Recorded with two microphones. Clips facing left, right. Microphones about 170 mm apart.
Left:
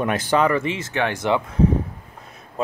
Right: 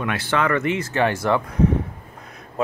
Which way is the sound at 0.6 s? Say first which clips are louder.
Right 3 dB; 30° left (ahead or behind).